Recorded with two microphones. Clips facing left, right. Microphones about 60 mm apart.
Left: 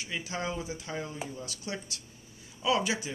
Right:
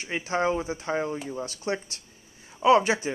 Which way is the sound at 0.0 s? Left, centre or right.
Right.